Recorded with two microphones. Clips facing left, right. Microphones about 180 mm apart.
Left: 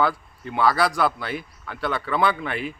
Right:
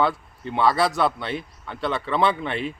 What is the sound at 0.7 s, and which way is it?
Speech, 25° right (ahead or behind).